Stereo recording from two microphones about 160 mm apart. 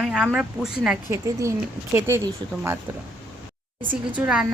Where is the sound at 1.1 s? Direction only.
20° right (ahead or behind).